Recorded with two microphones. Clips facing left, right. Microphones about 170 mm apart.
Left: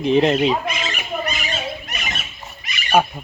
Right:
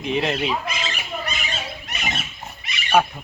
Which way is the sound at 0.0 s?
35° left (ahead or behind).